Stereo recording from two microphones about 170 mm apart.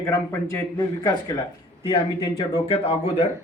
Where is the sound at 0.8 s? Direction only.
25° left (ahead or behind).